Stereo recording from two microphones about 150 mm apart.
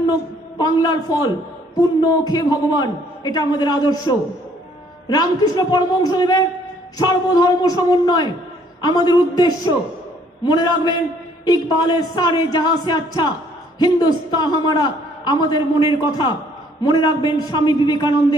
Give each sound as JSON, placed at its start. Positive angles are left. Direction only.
{"t": 0.6, "sound": "a man's voice", "side_deg": 25}